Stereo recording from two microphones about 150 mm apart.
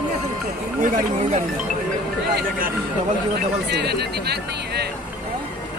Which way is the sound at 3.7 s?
90° right.